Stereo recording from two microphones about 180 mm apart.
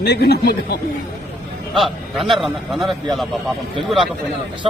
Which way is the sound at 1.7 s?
Centre (ahead or behind).